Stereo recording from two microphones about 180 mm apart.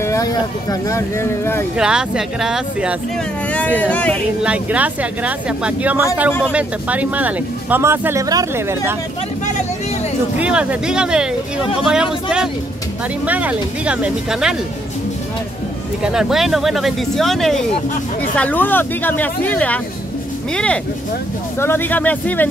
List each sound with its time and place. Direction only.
0.0 s speech: 20° left (ahead or behind)
1.8 s speech: 5° right (ahead or behind)
3.5 s speech: 10° left (ahead or behind)
4.4 s speech: 5° right (ahead or behind)
10.3 s speech: 5° right (ahead or behind)
16.0 s speech: 5° right (ahead or behind)